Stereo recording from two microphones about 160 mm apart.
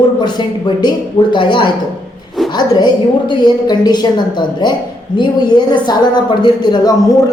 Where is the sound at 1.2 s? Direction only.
35° left (ahead or behind).